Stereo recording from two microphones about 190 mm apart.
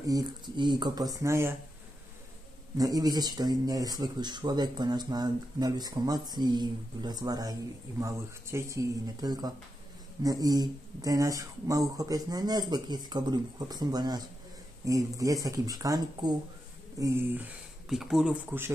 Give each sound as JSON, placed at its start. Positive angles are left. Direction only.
{"t": 0.0, "sound": "speech", "side_deg": -20}
{"t": 2.8, "sound": "speech", "side_deg": -20}